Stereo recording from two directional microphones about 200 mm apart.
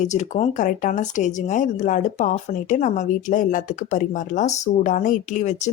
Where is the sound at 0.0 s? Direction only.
35° left (ahead or behind).